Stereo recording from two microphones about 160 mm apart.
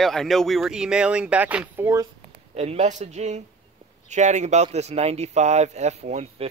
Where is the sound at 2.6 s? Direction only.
40° right (ahead or behind).